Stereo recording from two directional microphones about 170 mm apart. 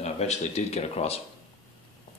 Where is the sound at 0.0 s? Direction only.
40° left (ahead or behind).